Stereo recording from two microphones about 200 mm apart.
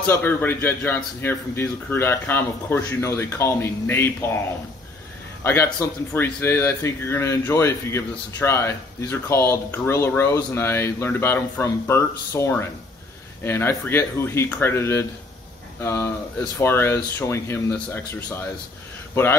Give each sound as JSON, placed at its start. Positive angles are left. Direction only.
{"t": 0.0, "sound": "a man's voice", "side_deg": 10}
{"t": 5.4, "sound": "a man's voice", "side_deg": 15}